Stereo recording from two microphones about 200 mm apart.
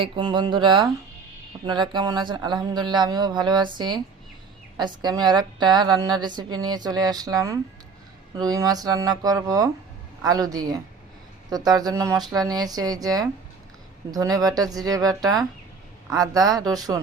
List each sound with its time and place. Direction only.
0.0 s speech: 25° right (ahead or behind)
11.8 s speech: 15° right (ahead or behind)